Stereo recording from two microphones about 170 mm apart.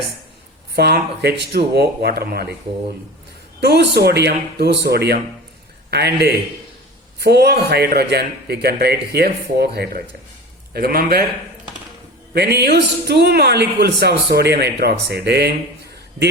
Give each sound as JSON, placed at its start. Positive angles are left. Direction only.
{"t": 0.8, "sound": "a man's voice", "side_deg": -75}
{"t": 3.6, "sound": "a man's voice", "side_deg": -75}
{"t": 12.3, "sound": "a man's voice", "side_deg": -70}